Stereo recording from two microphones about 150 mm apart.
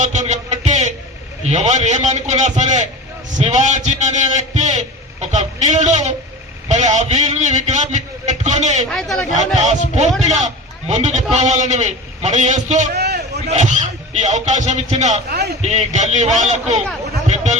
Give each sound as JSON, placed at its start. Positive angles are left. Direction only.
{"t": 0.0, "sound": "music", "side_deg": -55}
{"t": 1.5, "sound": "a man's voice", "side_deg": -50}
{"t": 8.9, "sound": "speech", "side_deg": 5}
{"t": 10.2, "sound": "a man's voice", "side_deg": -50}
{"t": 12.9, "sound": "a sound", "side_deg": -90}
{"t": 13.5, "sound": "a man's voice", "side_deg": -50}
{"t": 15.3, "sound": "a man's voice", "side_deg": -90}
{"t": 15.6, "sound": "a man's voice", "side_deg": -50}
{"t": 17.2, "sound": "a sound", "side_deg": -50}